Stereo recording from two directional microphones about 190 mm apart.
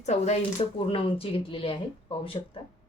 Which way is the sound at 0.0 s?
35° left (ahead or behind).